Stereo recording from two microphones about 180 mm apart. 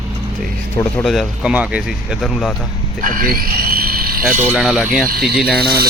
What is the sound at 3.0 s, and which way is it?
Speech, 50° right (ahead or behind).